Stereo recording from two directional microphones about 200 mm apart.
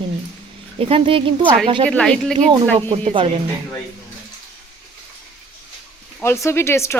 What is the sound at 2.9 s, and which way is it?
Speech, 30° right (ahead or behind).